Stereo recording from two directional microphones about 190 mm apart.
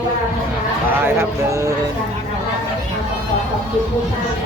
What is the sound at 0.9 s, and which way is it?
Speech, 10° right (ahead or behind).